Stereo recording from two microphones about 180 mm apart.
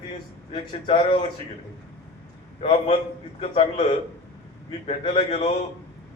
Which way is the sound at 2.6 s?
35° left (ahead or behind).